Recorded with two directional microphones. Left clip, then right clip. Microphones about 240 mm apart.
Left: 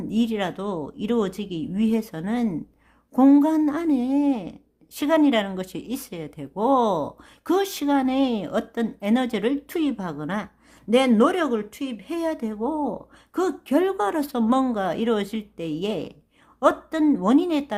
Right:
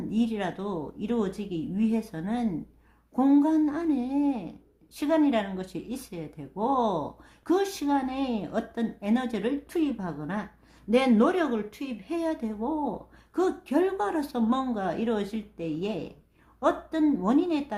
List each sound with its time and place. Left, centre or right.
0.1 s a woman's voice: left